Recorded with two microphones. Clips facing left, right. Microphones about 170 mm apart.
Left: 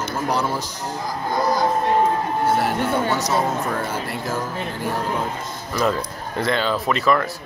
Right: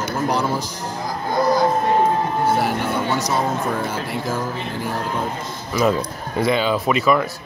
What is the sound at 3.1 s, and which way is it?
Speech, 5° left (ahead or behind).